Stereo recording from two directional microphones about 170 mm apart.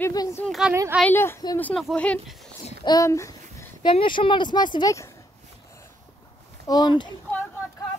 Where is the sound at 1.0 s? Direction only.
15° left (ahead or behind).